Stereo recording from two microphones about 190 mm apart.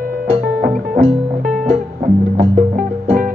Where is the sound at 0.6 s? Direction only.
45° right (ahead or behind).